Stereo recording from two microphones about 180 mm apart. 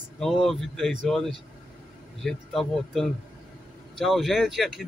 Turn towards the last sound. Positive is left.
turn(degrees=0)  # may be behind; listen again after turning